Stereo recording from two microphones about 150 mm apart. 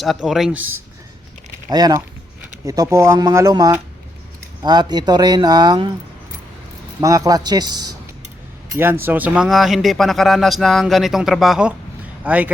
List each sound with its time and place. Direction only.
0.0 s speech: centre (ahead or behind)
1.7 s speech: 25° right (ahead or behind)
7.0 s speech: 20° right (ahead or behind)
8.7 s speech: 15° right (ahead or behind)